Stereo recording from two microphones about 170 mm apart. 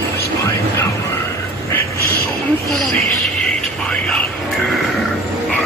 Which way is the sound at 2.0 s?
65° left (ahead or behind).